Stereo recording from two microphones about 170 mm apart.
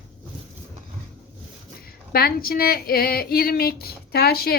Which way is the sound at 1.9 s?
60° left (ahead or behind).